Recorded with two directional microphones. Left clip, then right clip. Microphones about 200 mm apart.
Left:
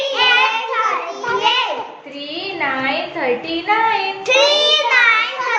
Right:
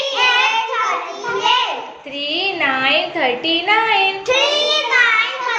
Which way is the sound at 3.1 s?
35° right (ahead or behind).